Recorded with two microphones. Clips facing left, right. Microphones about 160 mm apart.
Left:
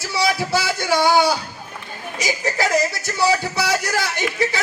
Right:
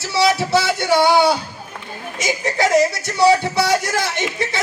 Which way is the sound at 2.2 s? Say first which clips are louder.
Right 3 dB; 20° right (ahead or behind).